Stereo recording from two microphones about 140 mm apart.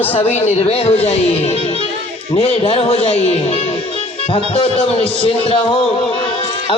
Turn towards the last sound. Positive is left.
turn(degrees=40)  # may be behind; listen again after turning